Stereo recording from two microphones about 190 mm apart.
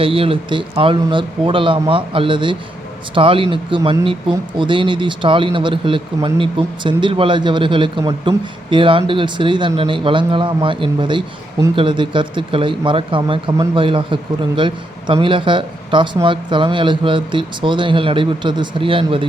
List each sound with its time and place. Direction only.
0.0 s speech: 30° right (ahead or behind)